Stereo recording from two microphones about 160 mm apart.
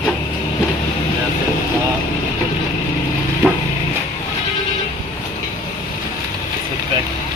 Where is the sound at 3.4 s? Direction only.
5° right (ahead or behind).